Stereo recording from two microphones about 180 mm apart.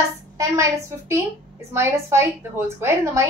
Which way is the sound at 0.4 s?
15° right (ahead or behind).